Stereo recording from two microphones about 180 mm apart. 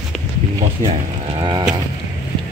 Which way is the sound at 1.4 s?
25° right (ahead or behind).